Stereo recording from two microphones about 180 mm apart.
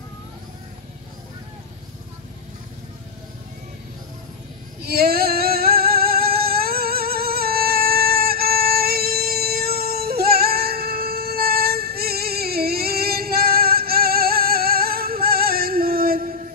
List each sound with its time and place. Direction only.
4.8 s female singing: 60° right (ahead or behind)